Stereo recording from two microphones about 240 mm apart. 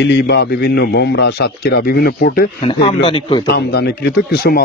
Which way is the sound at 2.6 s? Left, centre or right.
Left.